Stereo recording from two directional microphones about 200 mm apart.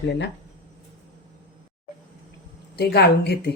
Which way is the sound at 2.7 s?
55° left (ahead or behind).